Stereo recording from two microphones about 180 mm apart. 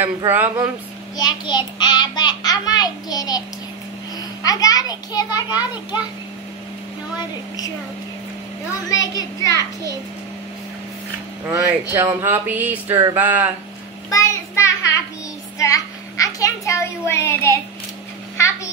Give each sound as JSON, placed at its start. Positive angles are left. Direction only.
{"t": 0.0, "sound": "a sound", "side_deg": -10}
{"t": 1.1, "sound": "a child's voice", "side_deg": 25}
{"t": 7.2, "sound": "a child's voice", "side_deg": 20}
{"t": 8.8, "sound": "a child's voice", "side_deg": 20}
{"t": 11.4, "sound": "a sound", "side_deg": -10}
{"t": 14.1, "sound": "child singing", "side_deg": 15}
{"t": 15.6, "sound": "a child's voice", "side_deg": 20}